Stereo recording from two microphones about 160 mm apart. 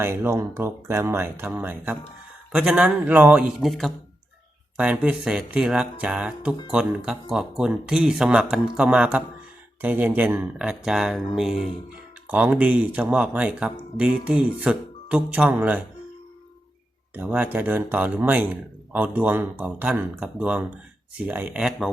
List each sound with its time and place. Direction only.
0.0 s speech: 15° right (ahead or behind)
17.2 s speech: 10° right (ahead or behind)